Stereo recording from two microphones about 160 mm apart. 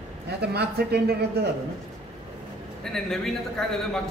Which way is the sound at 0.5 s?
90° right.